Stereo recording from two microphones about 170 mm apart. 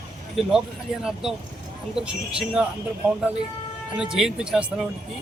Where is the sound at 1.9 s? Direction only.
5° right (ahead or behind).